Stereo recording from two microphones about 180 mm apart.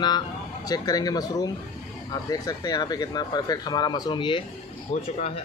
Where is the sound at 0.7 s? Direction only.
20° left (ahead or behind).